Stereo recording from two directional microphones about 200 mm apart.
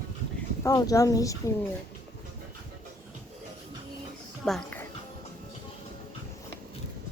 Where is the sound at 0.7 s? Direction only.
15° left (ahead or behind).